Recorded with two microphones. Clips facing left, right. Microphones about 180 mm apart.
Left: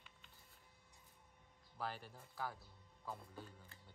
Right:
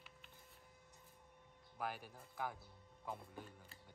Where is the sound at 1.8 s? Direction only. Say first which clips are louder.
Right 1 dB; 10° right (ahead or behind).